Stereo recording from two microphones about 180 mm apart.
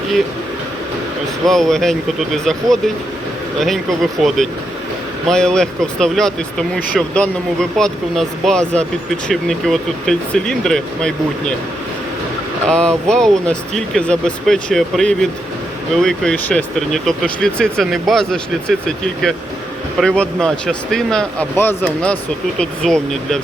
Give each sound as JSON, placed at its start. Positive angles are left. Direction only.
{"t": 1.5, "sound": "speech", "side_deg": 0}
{"t": 12.6, "sound": "speech", "side_deg": 5}